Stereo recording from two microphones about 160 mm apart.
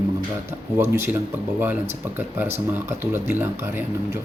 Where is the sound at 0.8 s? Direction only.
15° right (ahead or behind).